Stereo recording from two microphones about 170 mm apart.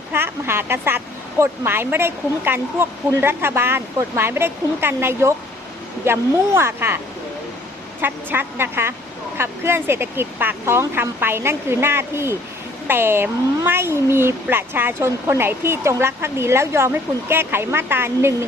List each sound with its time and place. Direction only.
0.1 s speech: 15° right (ahead or behind)
8.0 s speech: 10° right (ahead or behind)